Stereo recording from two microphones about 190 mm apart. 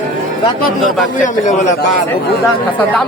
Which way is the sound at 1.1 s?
45° left (ahead or behind).